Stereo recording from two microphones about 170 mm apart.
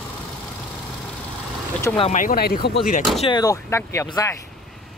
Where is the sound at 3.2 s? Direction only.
25° left (ahead or behind).